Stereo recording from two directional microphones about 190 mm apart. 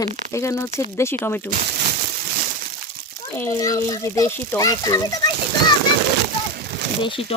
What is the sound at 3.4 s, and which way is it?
A child's voice, 15° left (ahead or behind).